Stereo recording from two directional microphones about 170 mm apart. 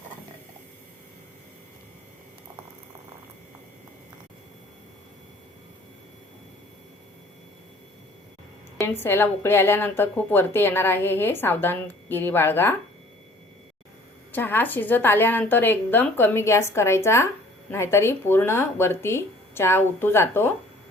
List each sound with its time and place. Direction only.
8.8 s a woman's voice: 15° left (ahead or behind)
14.3 s a woman's voice: 10° left (ahead or behind)